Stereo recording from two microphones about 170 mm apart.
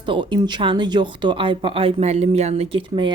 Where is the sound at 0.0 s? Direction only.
30° right (ahead or behind).